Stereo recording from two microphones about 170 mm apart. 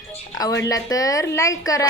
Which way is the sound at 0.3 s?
20° left (ahead or behind).